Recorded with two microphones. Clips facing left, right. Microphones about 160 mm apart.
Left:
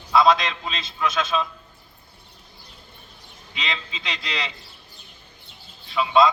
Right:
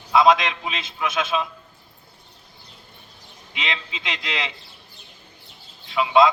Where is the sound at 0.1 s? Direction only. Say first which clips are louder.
Right 1 dB; 15° right (ahead or behind).